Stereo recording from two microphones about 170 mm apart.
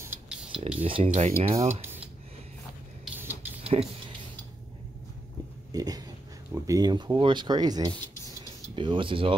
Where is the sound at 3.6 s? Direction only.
35° right (ahead or behind).